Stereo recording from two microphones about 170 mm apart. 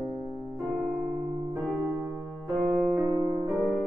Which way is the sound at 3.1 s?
20° right (ahead or behind).